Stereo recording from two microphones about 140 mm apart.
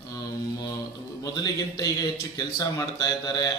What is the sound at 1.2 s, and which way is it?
Speech, 30° left (ahead or behind).